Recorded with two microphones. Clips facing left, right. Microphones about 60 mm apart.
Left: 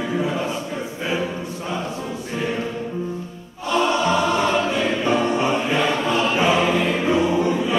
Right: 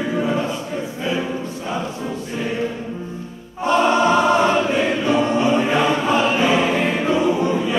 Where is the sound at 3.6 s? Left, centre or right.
Right.